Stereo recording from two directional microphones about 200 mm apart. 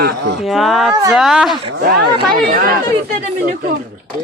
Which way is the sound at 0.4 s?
Centre (ahead or behind).